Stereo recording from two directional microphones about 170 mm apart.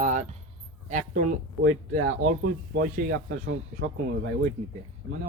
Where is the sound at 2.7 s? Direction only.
65° right (ahead or behind).